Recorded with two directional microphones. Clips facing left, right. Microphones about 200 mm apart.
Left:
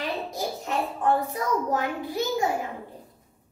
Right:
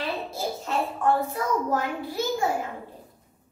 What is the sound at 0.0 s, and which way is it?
Hands, 15° left (ahead or behind).